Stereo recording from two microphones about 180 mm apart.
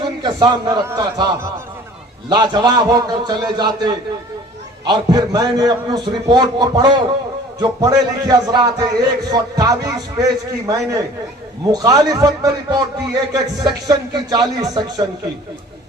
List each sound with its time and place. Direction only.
0.2 s a man's voice: 20° right (ahead or behind)